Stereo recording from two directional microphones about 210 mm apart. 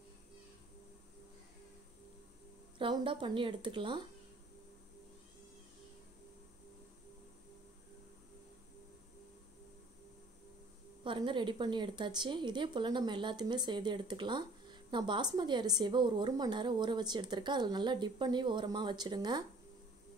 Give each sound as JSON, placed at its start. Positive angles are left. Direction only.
{"t": 2.8, "sound": "a woman's voice", "side_deg": -25}
{"t": 11.1, "sound": "a woman's voice", "side_deg": -20}